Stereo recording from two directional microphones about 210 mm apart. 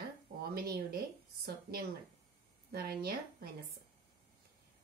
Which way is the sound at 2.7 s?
45° right (ahead or behind).